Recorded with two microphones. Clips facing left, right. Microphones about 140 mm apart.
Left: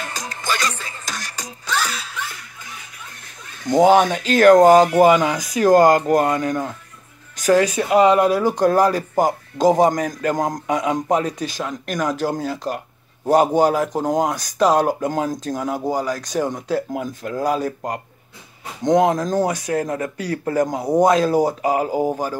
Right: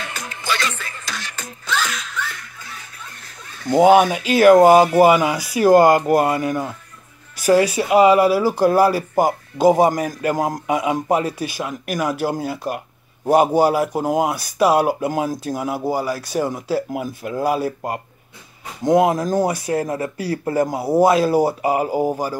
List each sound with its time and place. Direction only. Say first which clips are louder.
0.1 s music: right 1 dB; 40° left (ahead or behind)
1.9 s zipper: even; 35° left (ahead or behind)
3.7 s speech: right 1 dB; 10° right (ahead or behind)